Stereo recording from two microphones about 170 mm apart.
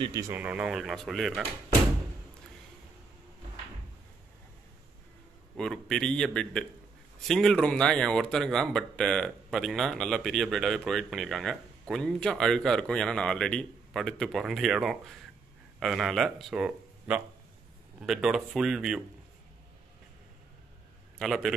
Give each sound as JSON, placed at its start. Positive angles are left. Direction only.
{"t": 0.0, "sound": "speech", "side_deg": -25}
{"t": 0.3, "sound": "speech", "side_deg": -10}
{"t": 5.6, "sound": "speech", "side_deg": 5}
{"t": 21.2, "sound": "speech", "side_deg": 0}